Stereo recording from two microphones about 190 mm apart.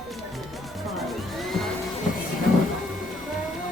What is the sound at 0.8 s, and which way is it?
Music, centre (ahead or behind).